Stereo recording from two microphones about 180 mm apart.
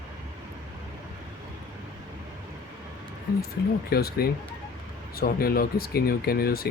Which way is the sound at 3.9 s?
60° left (ahead or behind).